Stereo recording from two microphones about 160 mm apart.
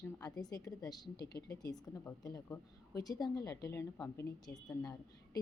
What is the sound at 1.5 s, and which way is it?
A woman's voice, 25° left (ahead or behind).